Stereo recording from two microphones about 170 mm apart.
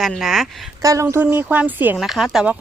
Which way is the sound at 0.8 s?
20° right (ahead or behind).